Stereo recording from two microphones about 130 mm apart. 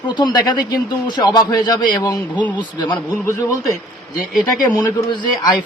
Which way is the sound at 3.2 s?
25° left (ahead or behind).